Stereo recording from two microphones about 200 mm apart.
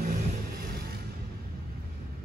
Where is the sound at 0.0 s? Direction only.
45° right (ahead or behind).